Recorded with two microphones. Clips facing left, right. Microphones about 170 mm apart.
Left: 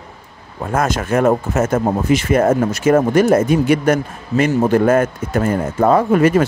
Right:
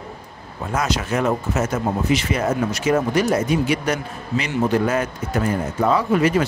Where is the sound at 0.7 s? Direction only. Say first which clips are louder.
Left 5 dB; 50° left (ahead or behind).